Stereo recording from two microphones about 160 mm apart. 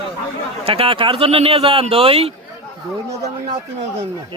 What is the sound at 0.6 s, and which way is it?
A man's voice, 35° right (ahead or behind).